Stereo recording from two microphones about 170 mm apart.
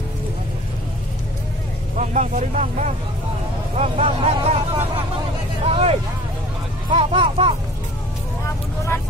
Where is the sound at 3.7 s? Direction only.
35° right (ahead or behind).